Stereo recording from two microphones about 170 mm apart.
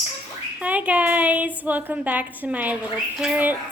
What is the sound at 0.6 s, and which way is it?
A woman's voice, 10° right (ahead or behind).